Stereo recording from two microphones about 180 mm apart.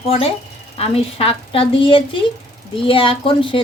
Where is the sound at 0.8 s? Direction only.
30° left (ahead or behind).